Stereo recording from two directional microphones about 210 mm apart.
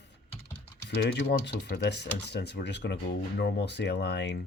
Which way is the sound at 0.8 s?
55° left (ahead or behind).